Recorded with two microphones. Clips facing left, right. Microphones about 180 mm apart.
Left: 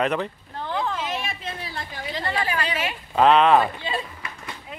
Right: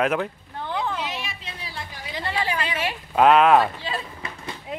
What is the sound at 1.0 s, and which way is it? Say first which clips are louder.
Hubbub: left 3 dB; 50° left (ahead or behind).